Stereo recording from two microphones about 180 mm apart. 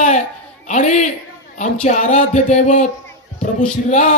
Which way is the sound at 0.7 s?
45° left (ahead or behind).